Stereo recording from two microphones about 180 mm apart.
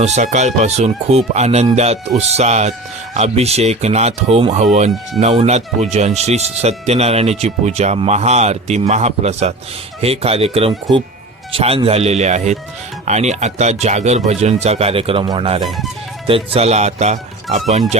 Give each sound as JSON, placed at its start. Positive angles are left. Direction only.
{"t": 0.0, "sound": "speech", "side_deg": -40}